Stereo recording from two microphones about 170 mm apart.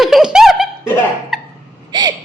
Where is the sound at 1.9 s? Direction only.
25° right (ahead or behind).